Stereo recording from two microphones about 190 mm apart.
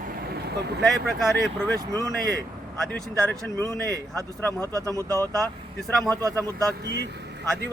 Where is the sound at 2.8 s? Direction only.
5° left (ahead or behind).